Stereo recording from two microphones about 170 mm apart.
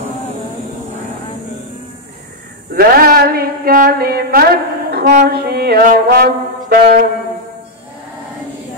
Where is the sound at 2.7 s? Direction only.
60° right (ahead or behind).